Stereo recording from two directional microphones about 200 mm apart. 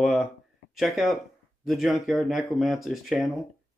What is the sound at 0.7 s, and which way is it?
Speech, centre (ahead or behind).